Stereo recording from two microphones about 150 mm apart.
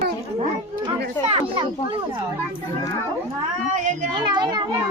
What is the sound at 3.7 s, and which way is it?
Speech, 55° right (ahead or behind).